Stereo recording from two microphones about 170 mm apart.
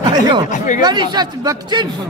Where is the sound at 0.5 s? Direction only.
45° left (ahead or behind).